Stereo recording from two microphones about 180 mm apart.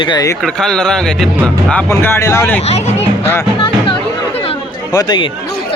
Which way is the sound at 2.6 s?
35° left (ahead or behind).